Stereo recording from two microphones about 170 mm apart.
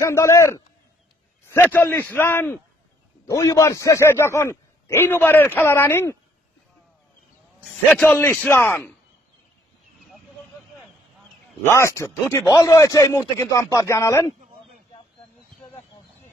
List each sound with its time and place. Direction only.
0.0 s a man's voice: 15° left (ahead or behind)
1.7 s a man's voice: 10° left (ahead or behind)
7.9 s a man's voice: 10° left (ahead or behind)
11.6 s a man's voice: 15° left (ahead or behind)